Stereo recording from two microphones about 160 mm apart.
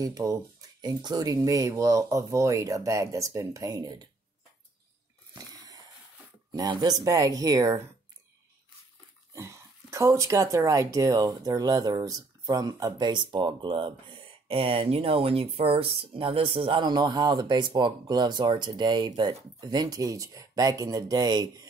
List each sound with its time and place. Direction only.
0.0 s speech: 20° right (ahead or behind)
6.5 s speech: 25° right (ahead or behind)
9.3 s speech: 20° right (ahead or behind)